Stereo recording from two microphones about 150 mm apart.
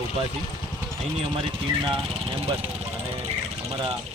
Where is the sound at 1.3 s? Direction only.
35° right (ahead or behind).